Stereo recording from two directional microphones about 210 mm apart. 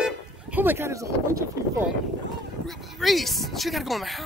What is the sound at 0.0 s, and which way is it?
Vehicle, 5° right (ahead or behind).